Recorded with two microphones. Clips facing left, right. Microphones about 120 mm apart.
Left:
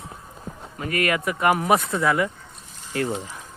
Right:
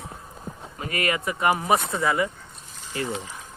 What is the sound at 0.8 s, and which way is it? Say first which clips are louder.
Speech: left 3 dB; 55° left (ahead or behind).